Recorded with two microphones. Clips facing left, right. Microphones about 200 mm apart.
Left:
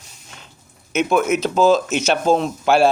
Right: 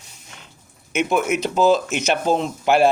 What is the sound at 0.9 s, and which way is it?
A man's voice, 15° right (ahead or behind).